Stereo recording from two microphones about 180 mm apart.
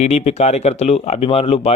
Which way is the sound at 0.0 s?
35° left (ahead or behind).